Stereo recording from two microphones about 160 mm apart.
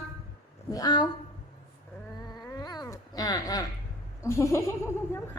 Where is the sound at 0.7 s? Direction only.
25° left (ahead or behind).